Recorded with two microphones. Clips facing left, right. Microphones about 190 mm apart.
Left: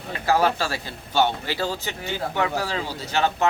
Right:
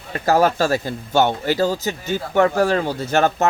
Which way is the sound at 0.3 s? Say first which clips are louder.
Right 5 dB; 45° right (ahead or behind).